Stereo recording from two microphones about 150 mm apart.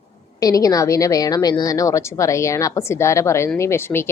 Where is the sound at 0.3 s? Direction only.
25° left (ahead or behind).